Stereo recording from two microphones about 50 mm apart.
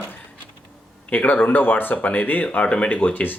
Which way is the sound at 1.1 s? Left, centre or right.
Left.